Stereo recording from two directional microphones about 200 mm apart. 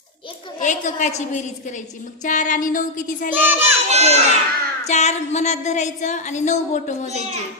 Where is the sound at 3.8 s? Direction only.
35° right (ahead or behind).